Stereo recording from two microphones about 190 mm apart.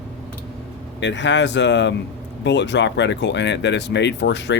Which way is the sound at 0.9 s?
70° left (ahead or behind).